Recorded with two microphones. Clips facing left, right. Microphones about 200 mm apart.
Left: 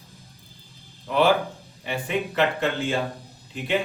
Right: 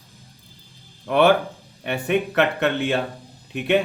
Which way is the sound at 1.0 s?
65° right (ahead or behind).